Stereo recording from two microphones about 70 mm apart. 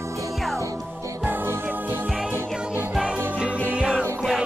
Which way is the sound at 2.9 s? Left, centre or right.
Centre.